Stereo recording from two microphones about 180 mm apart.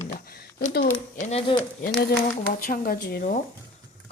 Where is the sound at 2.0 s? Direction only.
50° left (ahead or behind).